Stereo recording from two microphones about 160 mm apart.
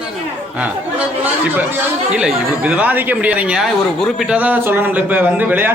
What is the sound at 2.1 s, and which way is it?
Speech, 10° right (ahead or behind).